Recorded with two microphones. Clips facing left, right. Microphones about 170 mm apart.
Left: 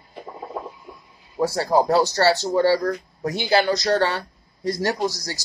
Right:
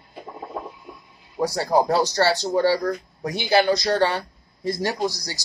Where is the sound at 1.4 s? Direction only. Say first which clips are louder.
Left 1 dB; 15° right (ahead or behind).